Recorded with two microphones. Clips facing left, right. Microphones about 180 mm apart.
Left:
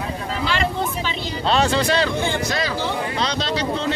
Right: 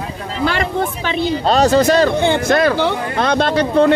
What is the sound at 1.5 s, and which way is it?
Speech, 40° right (ahead or behind).